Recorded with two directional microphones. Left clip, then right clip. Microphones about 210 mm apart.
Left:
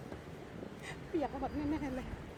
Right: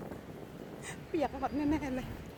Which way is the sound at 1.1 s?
35° right (ahead or behind).